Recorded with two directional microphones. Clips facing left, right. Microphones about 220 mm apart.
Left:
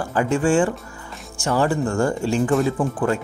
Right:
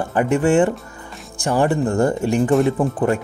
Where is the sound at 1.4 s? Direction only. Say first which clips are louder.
Right 2 dB; 15° right (ahead or behind).